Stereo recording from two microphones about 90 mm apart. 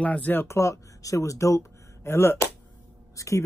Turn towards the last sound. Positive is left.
turn(degrees=35)  # may be behind; listen again after turning